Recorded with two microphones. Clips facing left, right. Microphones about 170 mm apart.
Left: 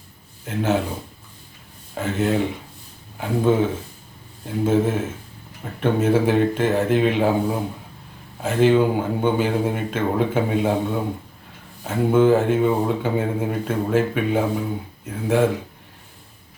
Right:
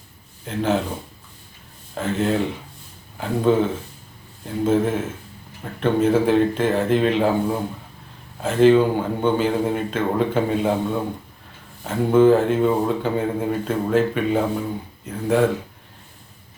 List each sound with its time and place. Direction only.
0.4 s speech: 5° left (ahead or behind)
2.0 s speech: 5° left (ahead or behind)